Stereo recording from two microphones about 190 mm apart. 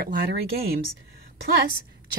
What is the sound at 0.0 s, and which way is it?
Speech, 55° right (ahead or behind).